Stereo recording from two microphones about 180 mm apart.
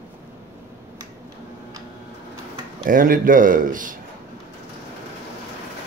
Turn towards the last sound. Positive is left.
turn(degrees=-45)  # may be behind; listen again after turning